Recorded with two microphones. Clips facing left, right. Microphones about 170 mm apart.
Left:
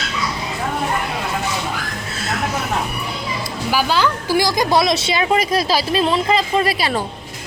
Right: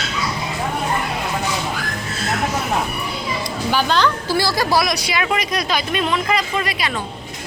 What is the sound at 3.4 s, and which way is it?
A woman's voice, 5° left (ahead or behind).